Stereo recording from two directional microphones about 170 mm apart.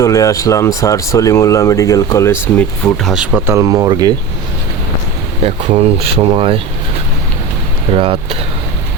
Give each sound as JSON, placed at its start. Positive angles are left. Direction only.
{"t": 0.0, "sound": "speech", "side_deg": 20}
{"t": 3.0, "sound": "speech", "side_deg": -5}
{"t": 3.4, "sound": "speech", "side_deg": -15}
{"t": 5.4, "sound": "speech", "side_deg": -35}
{"t": 7.9, "sound": "speech", "side_deg": -30}